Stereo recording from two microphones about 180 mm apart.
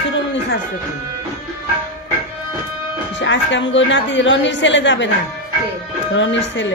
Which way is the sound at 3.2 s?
90° left.